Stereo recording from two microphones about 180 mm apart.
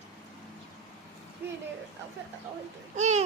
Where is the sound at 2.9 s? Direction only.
40° right (ahead or behind).